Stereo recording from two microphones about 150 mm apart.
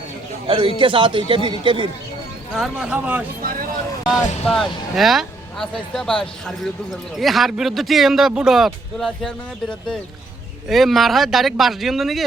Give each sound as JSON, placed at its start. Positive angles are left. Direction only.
{"t": 0.4, "sound": "a man's voice", "side_deg": -35}
{"t": 2.6, "sound": "speech", "side_deg": -10}
{"t": 4.1, "sound": "speech", "side_deg": 0}